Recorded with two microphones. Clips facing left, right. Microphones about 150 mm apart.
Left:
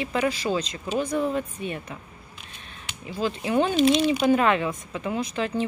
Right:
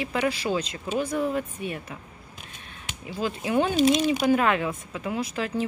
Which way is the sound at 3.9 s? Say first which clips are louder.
Left 1 dB; 45° right (ahead or behind).